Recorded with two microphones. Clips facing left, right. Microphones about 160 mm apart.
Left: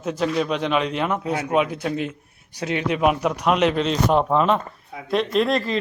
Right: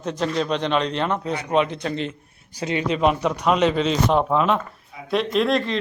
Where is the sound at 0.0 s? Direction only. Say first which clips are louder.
Left 1 dB; 5° left (ahead or behind).